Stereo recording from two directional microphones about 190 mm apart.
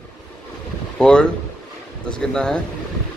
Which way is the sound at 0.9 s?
5° left (ahead or behind).